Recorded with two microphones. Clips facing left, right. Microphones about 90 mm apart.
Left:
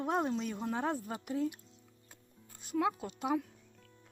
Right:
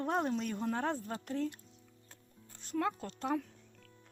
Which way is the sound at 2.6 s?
10° left (ahead or behind).